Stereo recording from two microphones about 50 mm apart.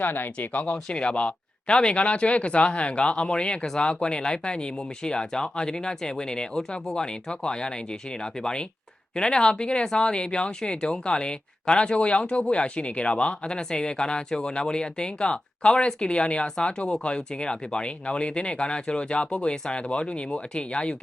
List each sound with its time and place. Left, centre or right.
0.0 s speech: left
0.3 s speech: left